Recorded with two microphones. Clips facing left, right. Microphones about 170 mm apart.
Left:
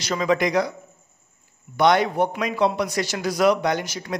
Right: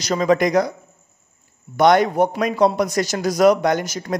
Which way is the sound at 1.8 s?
45° right (ahead or behind).